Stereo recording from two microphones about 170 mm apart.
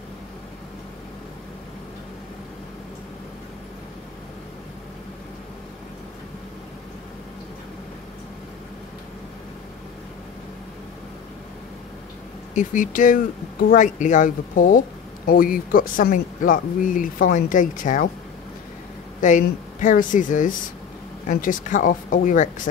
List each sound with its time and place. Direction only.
12.5 s speech: 50° left (ahead or behind)
19.2 s speech: 50° left (ahead or behind)